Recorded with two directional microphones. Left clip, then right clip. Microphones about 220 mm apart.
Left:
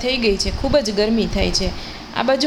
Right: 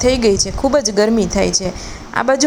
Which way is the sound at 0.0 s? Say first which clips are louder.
Right 5 dB; 25° right (ahead or behind).